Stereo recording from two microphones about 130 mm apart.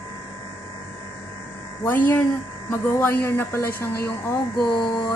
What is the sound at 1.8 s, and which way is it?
A woman's voice, 15° left (ahead or behind).